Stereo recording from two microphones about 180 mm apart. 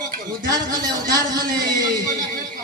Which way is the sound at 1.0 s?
20° right (ahead or behind).